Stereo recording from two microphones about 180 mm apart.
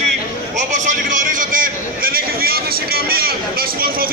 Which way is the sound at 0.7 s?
45° right (ahead or behind).